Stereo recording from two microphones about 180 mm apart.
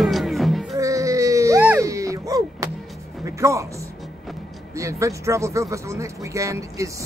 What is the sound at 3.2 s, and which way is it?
Music, 15° right (ahead or behind).